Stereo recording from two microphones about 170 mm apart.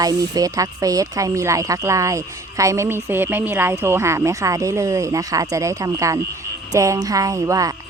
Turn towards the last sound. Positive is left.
turn(degrees=-20)  # may be behind; listen again after turning